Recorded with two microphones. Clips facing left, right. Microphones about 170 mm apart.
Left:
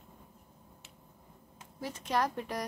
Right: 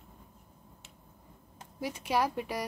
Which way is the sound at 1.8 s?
10° right (ahead or behind).